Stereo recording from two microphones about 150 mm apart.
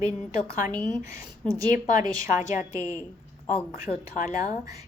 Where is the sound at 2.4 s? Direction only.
55° left (ahead or behind).